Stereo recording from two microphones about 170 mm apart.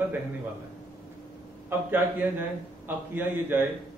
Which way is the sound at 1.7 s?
10° right (ahead or behind).